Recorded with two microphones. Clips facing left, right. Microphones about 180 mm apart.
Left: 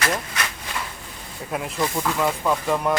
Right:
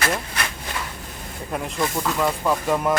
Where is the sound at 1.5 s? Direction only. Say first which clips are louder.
Even; 5° left (ahead or behind).